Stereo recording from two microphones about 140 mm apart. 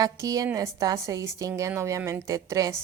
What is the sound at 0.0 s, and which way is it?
A woman's voice, 25° right (ahead or behind).